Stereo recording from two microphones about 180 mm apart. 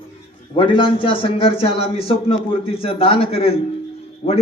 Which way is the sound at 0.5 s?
25° left (ahead or behind).